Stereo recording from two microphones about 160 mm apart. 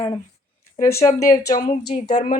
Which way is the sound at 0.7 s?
75° left (ahead or behind).